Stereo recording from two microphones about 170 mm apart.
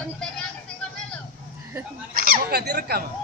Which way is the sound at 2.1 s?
60° right (ahead or behind).